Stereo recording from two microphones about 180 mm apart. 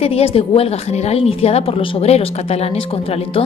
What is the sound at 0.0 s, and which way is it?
A woman's voice, 35° left (ahead or behind).